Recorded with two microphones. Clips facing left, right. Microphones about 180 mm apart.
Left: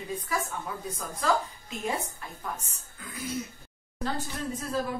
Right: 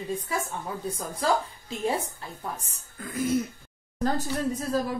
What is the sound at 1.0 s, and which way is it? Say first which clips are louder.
A woman's voice: right 1 dB; 30° right (ahead or behind).